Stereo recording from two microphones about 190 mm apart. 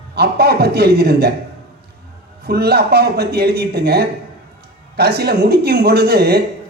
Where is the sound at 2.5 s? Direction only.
55° right (ahead or behind).